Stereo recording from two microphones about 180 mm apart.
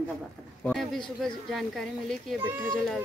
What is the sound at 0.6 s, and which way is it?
Speech, centre (ahead or behind).